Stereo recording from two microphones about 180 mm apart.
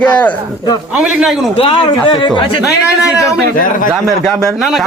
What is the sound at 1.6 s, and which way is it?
Speech, 30° left (ahead or behind).